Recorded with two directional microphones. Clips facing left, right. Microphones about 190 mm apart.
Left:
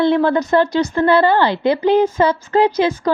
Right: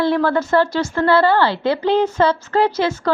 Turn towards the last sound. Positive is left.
turn(degrees=15)  # may be behind; listen again after turning